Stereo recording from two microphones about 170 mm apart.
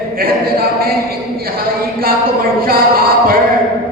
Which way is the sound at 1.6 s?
60° right (ahead or behind).